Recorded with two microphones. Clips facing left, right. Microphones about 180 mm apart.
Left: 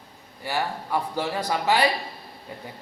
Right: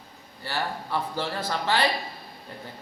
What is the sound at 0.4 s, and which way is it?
A man's voice, 15° left (ahead or behind).